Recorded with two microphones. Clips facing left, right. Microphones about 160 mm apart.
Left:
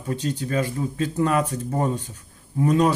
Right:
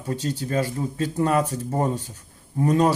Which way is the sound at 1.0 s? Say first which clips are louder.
Even; 35° right (ahead or behind).